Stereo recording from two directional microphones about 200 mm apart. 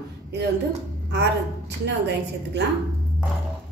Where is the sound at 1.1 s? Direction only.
60° right (ahead or behind).